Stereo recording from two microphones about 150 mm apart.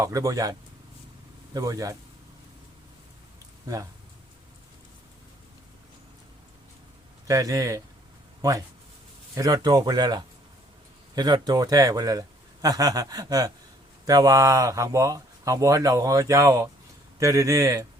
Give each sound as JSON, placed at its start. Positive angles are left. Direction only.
{"t": 0.0, "sound": "speech", "side_deg": -25}
{"t": 1.5, "sound": "speech", "side_deg": -25}
{"t": 7.3, "sound": "speech", "side_deg": -20}